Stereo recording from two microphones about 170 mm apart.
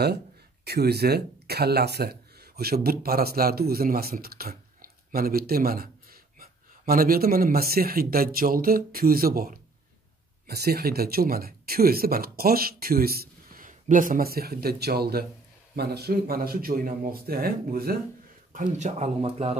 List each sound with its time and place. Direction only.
0.7 s speech: 70° right (ahead or behind)
18.5 s speech: 45° right (ahead or behind)